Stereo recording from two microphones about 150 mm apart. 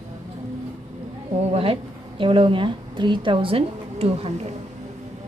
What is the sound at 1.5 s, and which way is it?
A woman's voice, 40° right (ahead or behind).